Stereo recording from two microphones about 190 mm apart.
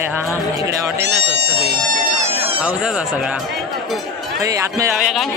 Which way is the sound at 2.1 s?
35° right (ahead or behind).